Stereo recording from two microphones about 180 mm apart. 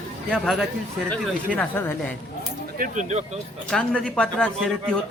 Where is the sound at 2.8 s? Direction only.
40° right (ahead or behind).